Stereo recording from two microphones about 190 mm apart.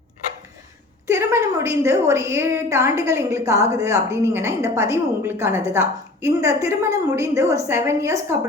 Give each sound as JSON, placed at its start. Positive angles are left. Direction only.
{"t": 1.0, "sound": "a woman's voice", "side_deg": -15}